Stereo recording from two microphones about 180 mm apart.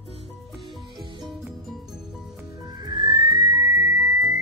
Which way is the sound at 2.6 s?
20° right (ahead or behind).